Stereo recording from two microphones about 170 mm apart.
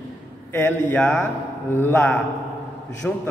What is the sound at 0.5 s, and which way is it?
A man's voice, 10° left (ahead or behind).